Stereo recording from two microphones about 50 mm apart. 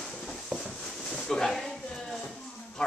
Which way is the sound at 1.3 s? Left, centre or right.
Centre.